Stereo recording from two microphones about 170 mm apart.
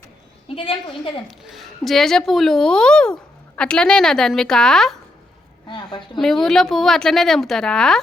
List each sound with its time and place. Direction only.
0.4 s a woman's voice: 30° left (ahead or behind)
1.5 s speech: centre (ahead or behind)
5.6 s a woman's voice: 30° left (ahead or behind)
6.1 s speech: centre (ahead or behind)